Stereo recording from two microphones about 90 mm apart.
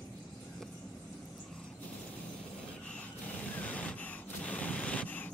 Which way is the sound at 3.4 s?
15° left (ahead or behind).